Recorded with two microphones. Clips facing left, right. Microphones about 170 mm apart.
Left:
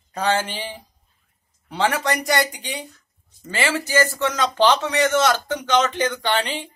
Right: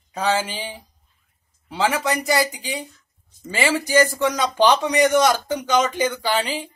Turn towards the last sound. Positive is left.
turn(degrees=-10)  # may be behind; listen again after turning